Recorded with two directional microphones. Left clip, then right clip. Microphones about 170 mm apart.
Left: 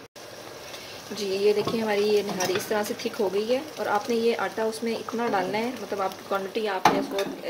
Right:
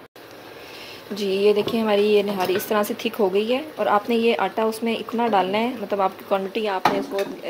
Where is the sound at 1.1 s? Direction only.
15° right (ahead or behind).